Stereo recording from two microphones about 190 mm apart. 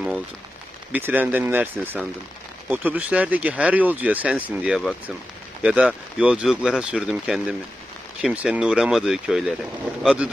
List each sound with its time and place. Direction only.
0.9 s speech: 10° right (ahead or behind)